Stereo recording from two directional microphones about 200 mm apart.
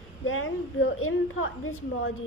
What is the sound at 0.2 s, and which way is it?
A woman's voice, 90° left.